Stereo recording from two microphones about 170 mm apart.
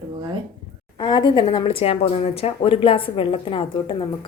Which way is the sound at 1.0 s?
25° left (ahead or behind).